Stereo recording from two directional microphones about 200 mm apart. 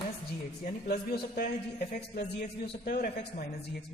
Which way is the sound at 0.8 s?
55° left (ahead or behind).